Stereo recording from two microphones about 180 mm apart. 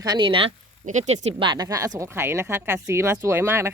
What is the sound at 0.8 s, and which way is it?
Speech, 40° right (ahead or behind).